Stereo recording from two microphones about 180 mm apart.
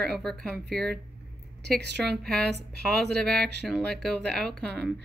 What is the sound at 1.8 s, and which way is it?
Speech, 65° right (ahead or behind).